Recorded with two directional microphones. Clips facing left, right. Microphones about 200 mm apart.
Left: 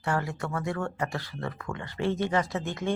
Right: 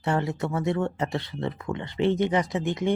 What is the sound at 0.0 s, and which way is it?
Speech, 20° right (ahead or behind).